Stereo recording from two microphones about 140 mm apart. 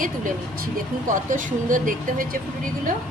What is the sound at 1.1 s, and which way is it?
Speech, 70° right (ahead or behind).